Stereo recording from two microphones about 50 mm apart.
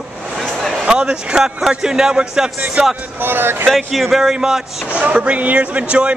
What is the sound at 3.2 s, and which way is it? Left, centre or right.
Speech, right.